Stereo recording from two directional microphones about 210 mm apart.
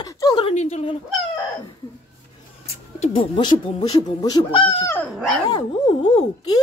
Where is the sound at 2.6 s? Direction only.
25° left (ahead or behind).